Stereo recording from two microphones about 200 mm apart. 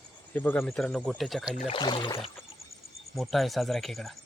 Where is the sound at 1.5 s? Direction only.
30° left (ahead or behind).